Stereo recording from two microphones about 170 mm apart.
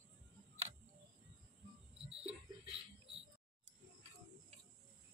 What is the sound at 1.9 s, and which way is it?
Cricket, 35° right (ahead or behind).